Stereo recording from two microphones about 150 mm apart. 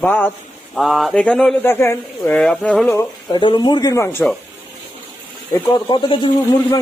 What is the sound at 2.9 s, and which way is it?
A man's voice, 30° left (ahead or behind).